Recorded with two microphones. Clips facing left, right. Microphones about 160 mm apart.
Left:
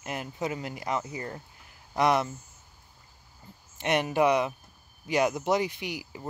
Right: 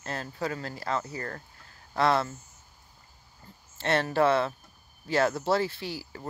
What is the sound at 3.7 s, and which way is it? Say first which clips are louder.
Speech: even; 15° left (ahead or behind).